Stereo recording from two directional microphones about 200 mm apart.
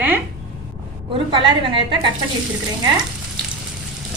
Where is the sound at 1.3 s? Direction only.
25° right (ahead or behind).